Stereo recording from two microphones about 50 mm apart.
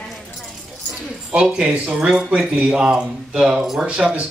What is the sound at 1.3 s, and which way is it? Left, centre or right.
Speech, right.